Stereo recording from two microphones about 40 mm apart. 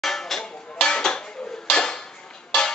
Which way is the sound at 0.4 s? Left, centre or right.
Left.